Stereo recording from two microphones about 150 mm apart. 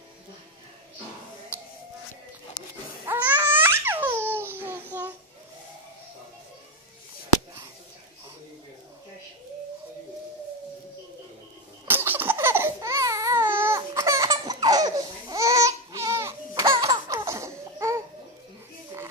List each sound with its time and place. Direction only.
3.1 s babbling: 15° right (ahead or behind)
11.9 s a sound: 15° right (ahead or behind)
13.7 s laughter: 20° right (ahead or behind)
16.7 s laughter: 35° right (ahead or behind)
17.1 s laughter: 20° right (ahead or behind)